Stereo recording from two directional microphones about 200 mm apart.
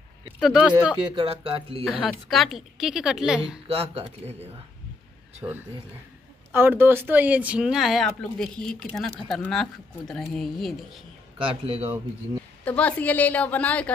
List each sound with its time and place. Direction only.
0.4 s speech: 5° right (ahead or behind)
1.1 s speech: 30° right (ahead or behind)
1.9 s speech: centre (ahead or behind)
3.6 s speech: 30° right (ahead or behind)
5.4 s speech: 5° right (ahead or behind)
11.4 s speech: 25° right (ahead or behind)
12.6 s a woman's voice: 5° left (ahead or behind)